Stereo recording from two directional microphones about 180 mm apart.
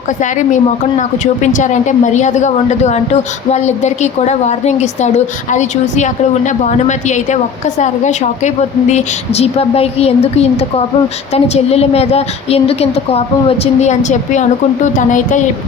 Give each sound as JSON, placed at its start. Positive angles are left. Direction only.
{"t": 0.2, "sound": "a woman's voice", "side_deg": 45}